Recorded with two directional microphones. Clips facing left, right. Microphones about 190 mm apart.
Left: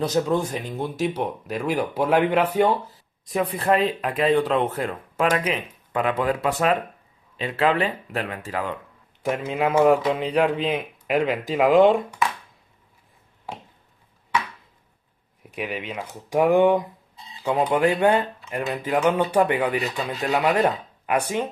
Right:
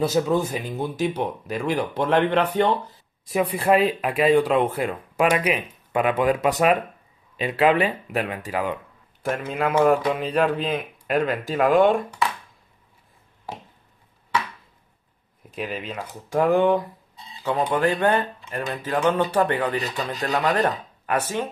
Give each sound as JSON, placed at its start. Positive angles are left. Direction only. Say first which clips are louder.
{"t": 0.0, "sound": "speech", "louder": "right 1 dB", "side_deg": -5}
{"t": 3.3, "sound": "speech", "louder": "right 2 dB", "side_deg": -10}
{"t": 9.4, "sound": "speech", "louder": "left 1 dB", "side_deg": 25}
{"t": 15.5, "sound": "speech", "louder": "even", "side_deg": 15}